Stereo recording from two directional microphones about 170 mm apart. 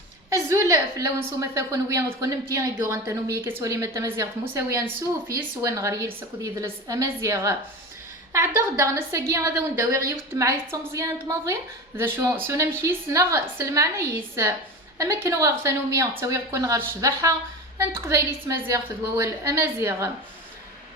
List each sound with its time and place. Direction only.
0.3 s a woman's voice: 15° right (ahead or behind)